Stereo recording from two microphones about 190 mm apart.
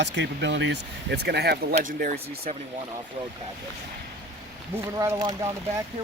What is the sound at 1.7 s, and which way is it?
Speech, 45° right (ahead or behind).